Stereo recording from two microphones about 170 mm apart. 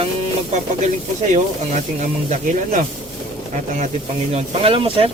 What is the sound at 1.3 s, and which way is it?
Speech, 45° right (ahead or behind).